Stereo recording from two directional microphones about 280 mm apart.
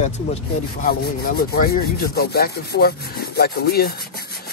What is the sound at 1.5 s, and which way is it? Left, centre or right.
Speech, left.